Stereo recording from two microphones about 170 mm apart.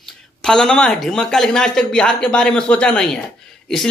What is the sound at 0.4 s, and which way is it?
A man's voice, 5° left (ahead or behind).